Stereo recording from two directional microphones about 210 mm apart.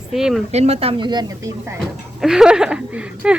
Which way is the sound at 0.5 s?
30° right (ahead or behind).